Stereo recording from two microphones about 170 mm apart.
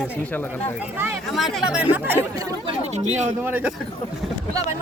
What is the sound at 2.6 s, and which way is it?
Speech, 40° right (ahead or behind).